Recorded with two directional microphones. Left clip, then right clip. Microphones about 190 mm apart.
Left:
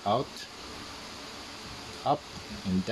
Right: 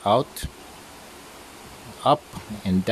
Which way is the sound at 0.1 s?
40° right (ahead or behind).